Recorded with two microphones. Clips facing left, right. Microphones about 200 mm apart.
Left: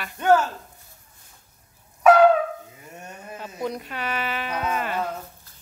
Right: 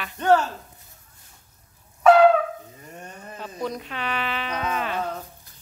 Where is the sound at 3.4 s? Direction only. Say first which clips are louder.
Even; 10° left (ahead or behind).